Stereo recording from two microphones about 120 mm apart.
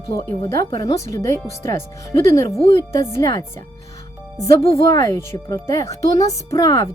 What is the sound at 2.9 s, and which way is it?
Speech, 25° left (ahead or behind).